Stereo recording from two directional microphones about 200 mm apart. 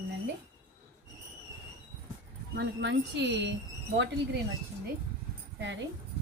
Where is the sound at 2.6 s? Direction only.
60° right (ahead or behind).